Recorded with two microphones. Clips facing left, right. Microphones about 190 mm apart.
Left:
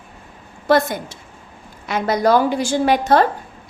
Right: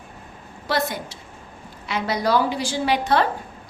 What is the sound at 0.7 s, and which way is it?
A woman's voice, 50° left (ahead or behind).